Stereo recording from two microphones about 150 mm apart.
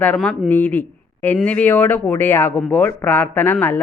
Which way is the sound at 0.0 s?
10° left (ahead or behind).